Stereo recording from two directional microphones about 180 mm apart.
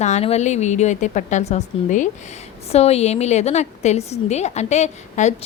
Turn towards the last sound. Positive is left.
turn(degrees=40)  # may be behind; listen again after turning